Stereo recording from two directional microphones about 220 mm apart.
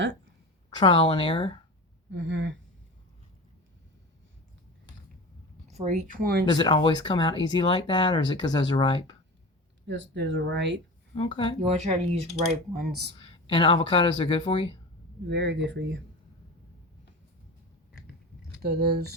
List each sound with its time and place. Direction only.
0.7 s speech: 20° left (ahead or behind)
2.0 s speech: 55° right (ahead or behind)
5.6 s speech: 30° right (ahead or behind)
6.4 s speech: 20° left (ahead or behind)
9.8 s speech: 55° right (ahead or behind)
11.1 s speech: 25° left (ahead or behind)
11.6 s speech: 30° right (ahead or behind)
13.1 s speech: 25° left (ahead or behind)
15.3 s speech: 55° right (ahead or behind)
18.6 s speech: 45° right (ahead or behind)